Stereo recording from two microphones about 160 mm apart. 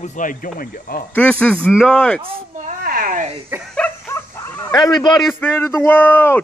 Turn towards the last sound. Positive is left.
turn(degrees=15)  # may be behind; listen again after turning